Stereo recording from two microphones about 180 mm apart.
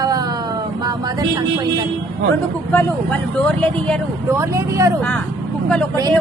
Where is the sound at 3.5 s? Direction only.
5° left (ahead or behind).